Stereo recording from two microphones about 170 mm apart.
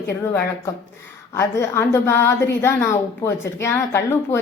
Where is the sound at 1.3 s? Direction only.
15° left (ahead or behind).